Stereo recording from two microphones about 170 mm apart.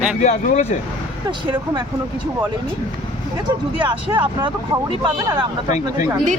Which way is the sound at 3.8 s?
30° right (ahead or behind).